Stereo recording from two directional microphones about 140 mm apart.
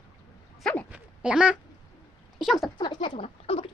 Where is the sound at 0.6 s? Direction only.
5° left (ahead or behind).